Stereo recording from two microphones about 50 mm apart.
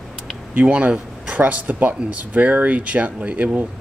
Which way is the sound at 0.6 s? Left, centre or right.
Right.